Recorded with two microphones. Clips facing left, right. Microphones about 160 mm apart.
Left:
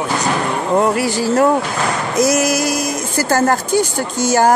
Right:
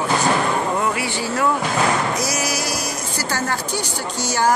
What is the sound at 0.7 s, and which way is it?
Speech, 45° left (ahead or behind).